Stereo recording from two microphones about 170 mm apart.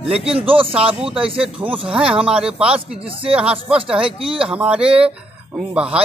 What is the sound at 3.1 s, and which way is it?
Speech, 30° right (ahead or behind).